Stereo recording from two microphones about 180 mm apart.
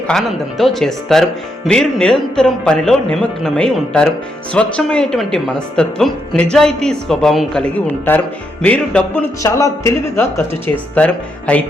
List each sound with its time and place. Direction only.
0.1 s a woman's voice: centre (ahead or behind)
9.4 s speech: 20° left (ahead or behind)